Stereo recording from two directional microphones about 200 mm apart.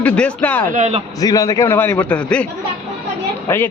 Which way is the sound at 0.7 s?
35° right (ahead or behind).